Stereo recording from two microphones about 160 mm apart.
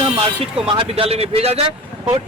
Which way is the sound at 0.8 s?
40° right (ahead or behind).